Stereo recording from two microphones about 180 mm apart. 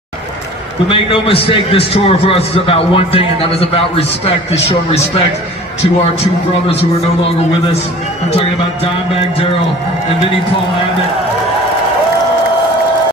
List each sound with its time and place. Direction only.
0.8 s a man's voice: 30° left (ahead or behind)